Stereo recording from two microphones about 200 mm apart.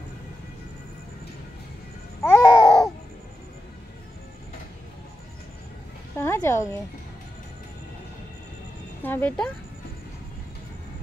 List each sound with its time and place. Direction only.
2.2 s babbling: 15° left (ahead or behind)
6.1 s a sound: 15° left (ahead or behind)
9.0 s speech: 10° left (ahead or behind)